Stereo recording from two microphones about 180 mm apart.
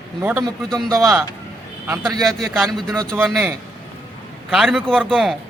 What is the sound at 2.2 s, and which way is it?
Speech, centre (ahead or behind).